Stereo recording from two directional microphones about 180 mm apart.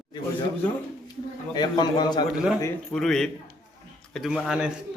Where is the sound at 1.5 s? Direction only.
25° left (ahead or behind).